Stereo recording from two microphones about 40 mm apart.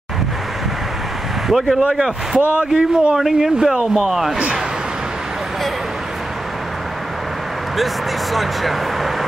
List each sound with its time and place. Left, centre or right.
1.5 s speech: centre
1.8 s speech: centre
2.3 s a man's voice: right
2.7 s a man's voice: right
3.2 s speech: centre
7.7 s speech: centre